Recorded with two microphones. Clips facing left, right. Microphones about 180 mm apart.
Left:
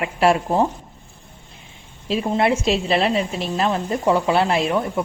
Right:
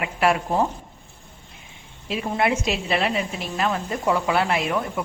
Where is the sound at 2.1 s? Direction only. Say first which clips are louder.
Left 4 dB; 30° left (ahead or behind).